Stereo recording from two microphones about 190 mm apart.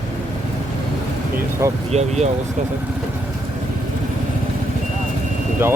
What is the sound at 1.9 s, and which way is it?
Speech, 35° right (ahead or behind).